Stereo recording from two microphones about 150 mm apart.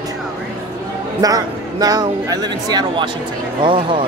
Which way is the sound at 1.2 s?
25° right (ahead or behind).